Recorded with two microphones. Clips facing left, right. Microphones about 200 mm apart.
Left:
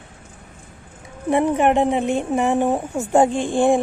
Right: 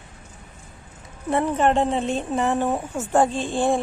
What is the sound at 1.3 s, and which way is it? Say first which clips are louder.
Speech: left 3 dB; 15° left (ahead or behind).